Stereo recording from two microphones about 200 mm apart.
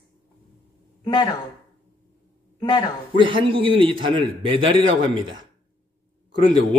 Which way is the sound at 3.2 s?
25° right (ahead or behind).